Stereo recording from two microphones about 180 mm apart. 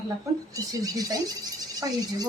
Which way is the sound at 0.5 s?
20° right (ahead or behind).